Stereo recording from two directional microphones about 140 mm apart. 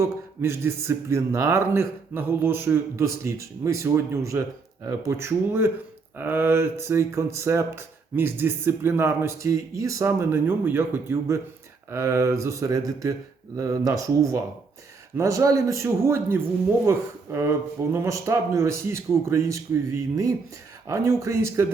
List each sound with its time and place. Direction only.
0.0 s speech: 20° right (ahead or behind)
20.8 s speech: 20° right (ahead or behind)